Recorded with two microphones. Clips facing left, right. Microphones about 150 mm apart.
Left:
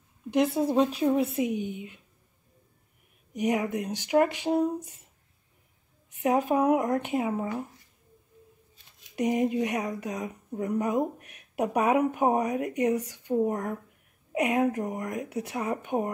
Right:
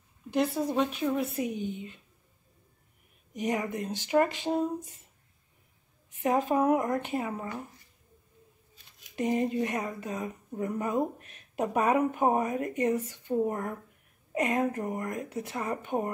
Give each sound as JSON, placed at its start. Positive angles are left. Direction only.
{"t": 0.6, "sound": "a woman's voice", "side_deg": 30}
{"t": 3.3, "sound": "speech", "side_deg": 10}
{"t": 6.1, "sound": "speech", "side_deg": 15}
{"t": 9.1, "sound": "speech", "side_deg": 15}